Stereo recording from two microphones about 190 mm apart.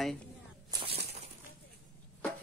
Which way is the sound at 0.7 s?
30° right (ahead or behind).